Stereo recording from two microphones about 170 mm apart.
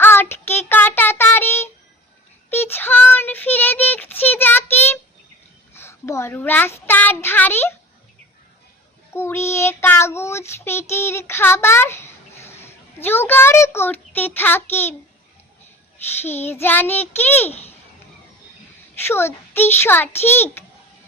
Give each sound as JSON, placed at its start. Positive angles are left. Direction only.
{"t": 0.0, "sound": "child singing", "side_deg": 15}
{"t": 9.1, "sound": "child singing", "side_deg": 15}
{"t": 12.6, "sound": "a child's voice", "side_deg": 15}
{"t": 16.2, "sound": "a child's voice", "side_deg": 15}
{"t": 17.5, "sound": "a child's voice", "side_deg": 40}
{"t": 18.9, "sound": "a child's voice", "side_deg": 15}